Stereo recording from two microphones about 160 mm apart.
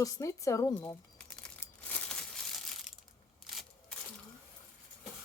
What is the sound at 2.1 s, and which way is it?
Crumpling, centre (ahead or behind).